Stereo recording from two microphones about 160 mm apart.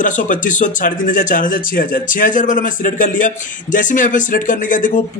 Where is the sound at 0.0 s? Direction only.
55° left (ahead or behind).